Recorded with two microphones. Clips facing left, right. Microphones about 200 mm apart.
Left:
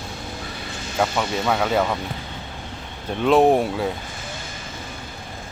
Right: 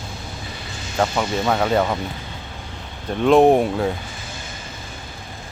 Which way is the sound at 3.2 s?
Centre (ahead or behind).